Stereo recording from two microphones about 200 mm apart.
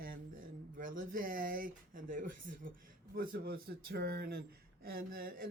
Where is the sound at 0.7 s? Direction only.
45° right (ahead or behind).